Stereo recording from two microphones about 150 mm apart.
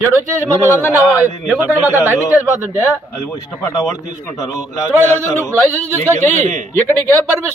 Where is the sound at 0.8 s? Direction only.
20° left (ahead or behind).